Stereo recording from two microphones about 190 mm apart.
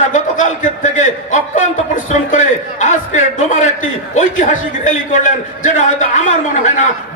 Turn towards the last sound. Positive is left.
turn(degrees=40)  # may be behind; listen again after turning